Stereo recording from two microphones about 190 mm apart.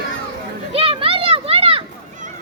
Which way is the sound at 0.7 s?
30° right (ahead or behind).